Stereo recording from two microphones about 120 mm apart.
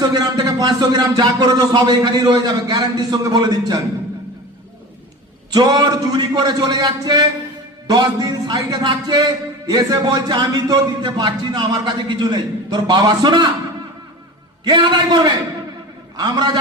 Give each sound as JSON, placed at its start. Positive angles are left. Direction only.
{"t": 0.0, "sound": "a man's voice", "side_deg": -35}
{"t": 5.5, "sound": "a man's voice", "side_deg": -35}
{"t": 14.6, "sound": "a man's voice", "side_deg": -40}